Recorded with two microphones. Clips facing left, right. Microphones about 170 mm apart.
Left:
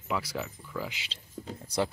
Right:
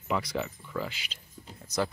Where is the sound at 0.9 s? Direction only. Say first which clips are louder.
Left 5 dB; 25° left (ahead or behind).